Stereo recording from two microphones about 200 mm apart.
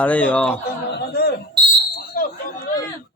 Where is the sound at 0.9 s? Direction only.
55° left (ahead or behind).